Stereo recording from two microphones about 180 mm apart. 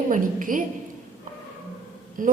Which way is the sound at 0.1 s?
50° right (ahead or behind).